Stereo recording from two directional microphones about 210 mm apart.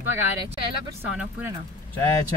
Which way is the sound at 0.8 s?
10° right (ahead or behind).